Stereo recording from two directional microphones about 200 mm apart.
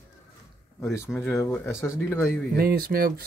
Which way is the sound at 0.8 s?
15° left (ahead or behind).